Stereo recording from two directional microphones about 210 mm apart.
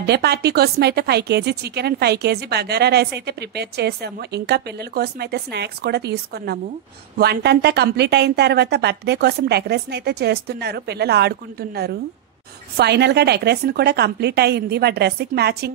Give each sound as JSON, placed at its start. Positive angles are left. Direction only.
{"t": 0.0, "sound": "speech", "side_deg": -50}